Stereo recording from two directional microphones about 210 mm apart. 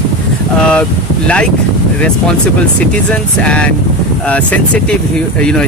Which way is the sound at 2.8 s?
5° left (ahead or behind).